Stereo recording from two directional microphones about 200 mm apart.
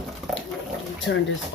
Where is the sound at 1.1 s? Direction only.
65° left (ahead or behind).